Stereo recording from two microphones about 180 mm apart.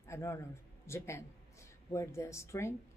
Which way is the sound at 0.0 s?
15° left (ahead or behind).